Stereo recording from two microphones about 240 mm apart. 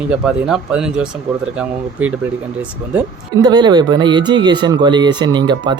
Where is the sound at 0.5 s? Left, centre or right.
Centre.